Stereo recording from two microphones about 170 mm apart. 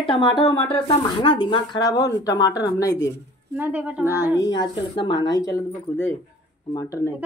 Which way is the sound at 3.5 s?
10° right (ahead or behind).